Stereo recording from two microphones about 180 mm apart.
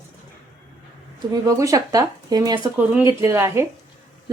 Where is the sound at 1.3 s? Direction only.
20° right (ahead or behind).